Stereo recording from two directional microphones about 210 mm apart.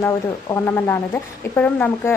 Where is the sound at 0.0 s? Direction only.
10° left (ahead or behind).